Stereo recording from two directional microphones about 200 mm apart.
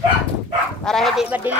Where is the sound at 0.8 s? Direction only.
Centre (ahead or behind).